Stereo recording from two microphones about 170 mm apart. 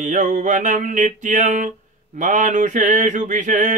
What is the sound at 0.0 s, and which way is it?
Mantra, 50° right (ahead or behind).